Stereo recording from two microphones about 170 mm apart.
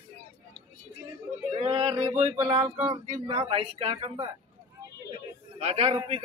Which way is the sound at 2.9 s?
35° right (ahead or behind).